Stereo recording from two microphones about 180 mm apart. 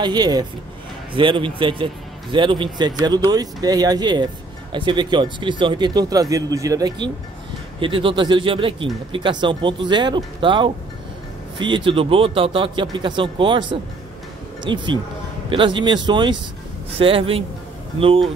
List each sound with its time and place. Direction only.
0.0 s speech: 25° right (ahead or behind)